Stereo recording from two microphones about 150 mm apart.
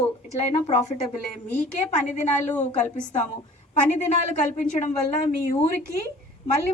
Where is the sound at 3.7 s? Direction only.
50° left (ahead or behind).